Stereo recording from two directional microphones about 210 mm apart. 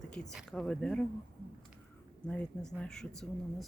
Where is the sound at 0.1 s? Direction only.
5° left (ahead or behind).